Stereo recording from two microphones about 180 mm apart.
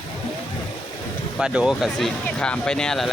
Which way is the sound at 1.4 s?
5° right (ahead or behind).